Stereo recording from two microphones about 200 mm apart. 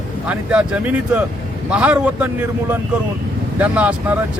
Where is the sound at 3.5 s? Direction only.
10° right (ahead or behind).